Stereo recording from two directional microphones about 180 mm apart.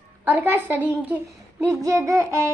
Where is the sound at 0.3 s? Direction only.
10° right (ahead or behind).